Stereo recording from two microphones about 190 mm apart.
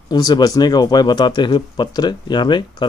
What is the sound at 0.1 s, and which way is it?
Speech, 20° left (ahead or behind).